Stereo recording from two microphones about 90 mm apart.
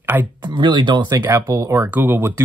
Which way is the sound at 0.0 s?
20° right (ahead or behind).